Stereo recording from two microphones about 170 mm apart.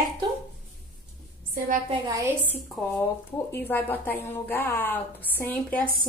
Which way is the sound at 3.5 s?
10° left (ahead or behind).